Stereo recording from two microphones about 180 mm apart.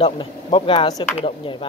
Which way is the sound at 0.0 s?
30° left (ahead or behind).